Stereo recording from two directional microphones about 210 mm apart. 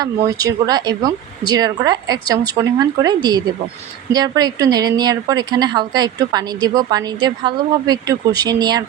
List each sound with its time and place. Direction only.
0.3 s a woman's voice: 15° right (ahead or behind)